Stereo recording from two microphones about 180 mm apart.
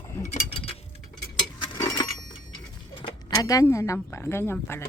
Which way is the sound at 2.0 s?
20° left (ahead or behind).